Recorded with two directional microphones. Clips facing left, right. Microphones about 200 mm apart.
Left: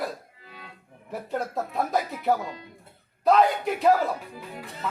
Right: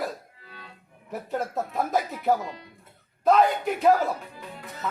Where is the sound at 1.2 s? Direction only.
Centre (ahead or behind).